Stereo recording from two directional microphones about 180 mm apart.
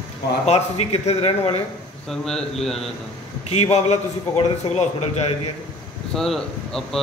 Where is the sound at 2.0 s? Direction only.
Centre (ahead or behind).